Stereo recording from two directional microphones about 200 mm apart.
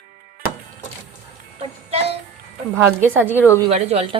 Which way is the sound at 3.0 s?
10° right (ahead or behind).